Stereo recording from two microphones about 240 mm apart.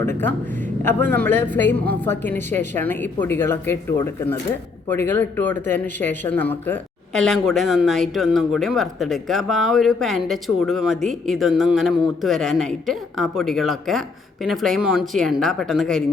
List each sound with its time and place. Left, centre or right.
0.9 s a woman's voice: centre